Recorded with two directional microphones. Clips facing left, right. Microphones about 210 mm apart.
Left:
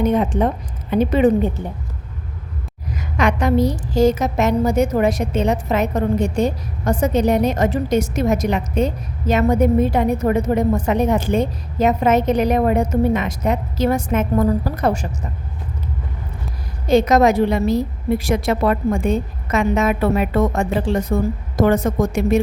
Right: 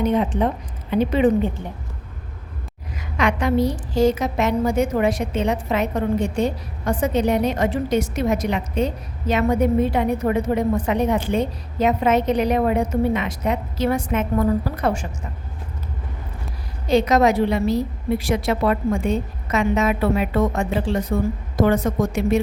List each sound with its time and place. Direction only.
0.0 s a woman's voice: 45° left (ahead or behind)
2.9 s a woman's voice: 45° left (ahead or behind)
16.9 s a woman's voice: 45° left (ahead or behind)